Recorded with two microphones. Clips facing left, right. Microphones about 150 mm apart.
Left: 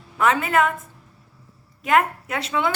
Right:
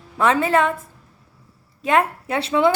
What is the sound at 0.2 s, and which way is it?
Speech, 30° right (ahead or behind).